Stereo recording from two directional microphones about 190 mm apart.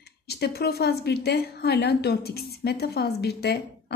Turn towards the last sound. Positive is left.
turn(degrees=60)  # may be behind; listen again after turning